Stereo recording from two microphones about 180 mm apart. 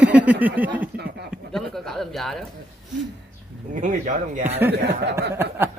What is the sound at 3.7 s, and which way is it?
Speech, 45° right (ahead or behind).